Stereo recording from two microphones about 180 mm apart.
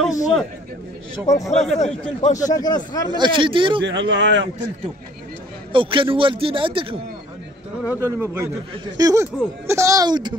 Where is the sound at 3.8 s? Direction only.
90° right.